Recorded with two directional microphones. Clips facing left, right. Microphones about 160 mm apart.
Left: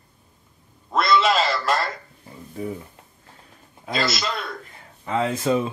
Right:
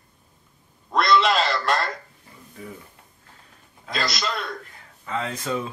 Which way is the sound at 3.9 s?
Centre (ahead or behind).